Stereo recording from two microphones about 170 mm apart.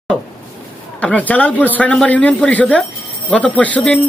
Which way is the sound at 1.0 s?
10° left (ahead or behind).